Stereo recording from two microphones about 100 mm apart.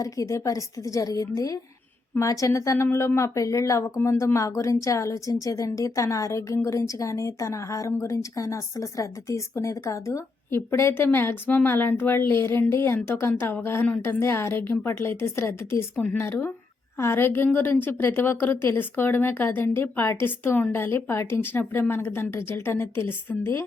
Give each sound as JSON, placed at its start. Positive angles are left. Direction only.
{"t": 0.0, "sound": "speech", "side_deg": 30}